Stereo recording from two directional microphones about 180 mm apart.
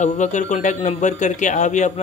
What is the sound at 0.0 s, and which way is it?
Speech, 40° left (ahead or behind).